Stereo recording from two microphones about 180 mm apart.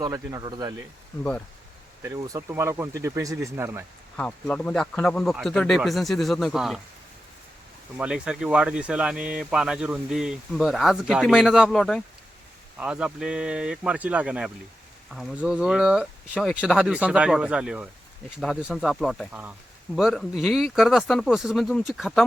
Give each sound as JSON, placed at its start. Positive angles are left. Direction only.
{"t": 0.0, "sound": "speech", "side_deg": -20}
{"t": 2.0, "sound": "speech", "side_deg": -20}
{"t": 4.2, "sound": "speech", "side_deg": 5}
{"t": 7.9, "sound": "speech", "side_deg": -5}